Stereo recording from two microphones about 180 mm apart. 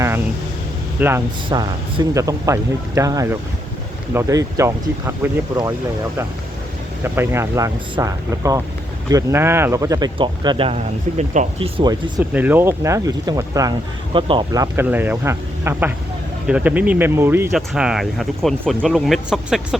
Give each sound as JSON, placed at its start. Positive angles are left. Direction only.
{"t": 0.9, "sound": "speech", "side_deg": -10}
{"t": 1.5, "sound": "speech", "side_deg": -25}
{"t": 7.0, "sound": "speech", "side_deg": -15}
{"t": 11.2, "sound": "speech", "side_deg": -40}
{"t": 11.8, "sound": "speech", "side_deg": -25}
{"t": 12.2, "sound": "speech", "side_deg": -10}
{"t": 17.5, "sound": "speech", "side_deg": -5}